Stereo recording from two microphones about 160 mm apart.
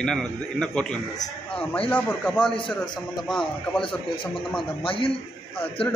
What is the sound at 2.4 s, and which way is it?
Speech, 30° left (ahead or behind).